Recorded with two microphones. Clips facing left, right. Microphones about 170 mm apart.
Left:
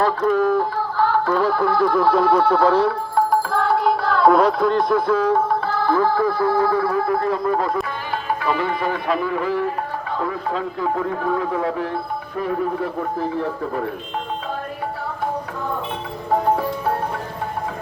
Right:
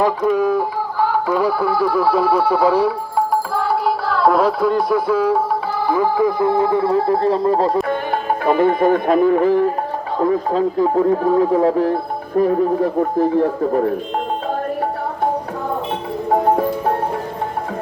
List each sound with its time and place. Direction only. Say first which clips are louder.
0.0 s speech: right 2 dB; 10° right (ahead or behind); by 7.9 s 35° right (ahead or behind)
7.9 s speech: right 6 dB; 50° right (ahead or behind)